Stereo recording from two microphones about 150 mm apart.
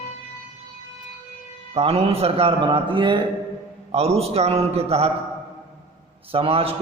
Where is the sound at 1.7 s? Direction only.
40° right (ahead or behind).